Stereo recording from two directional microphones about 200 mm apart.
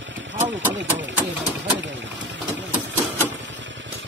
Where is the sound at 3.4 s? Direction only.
65° right (ahead or behind).